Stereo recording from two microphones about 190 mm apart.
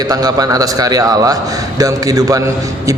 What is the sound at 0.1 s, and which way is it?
A man's voice, 20° right (ahead or behind).